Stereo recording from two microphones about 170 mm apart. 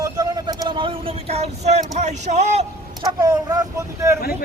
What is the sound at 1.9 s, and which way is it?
Speech, 45° right (ahead or behind).